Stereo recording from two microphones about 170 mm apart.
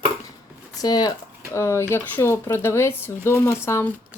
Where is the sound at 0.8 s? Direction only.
20° left (ahead or behind).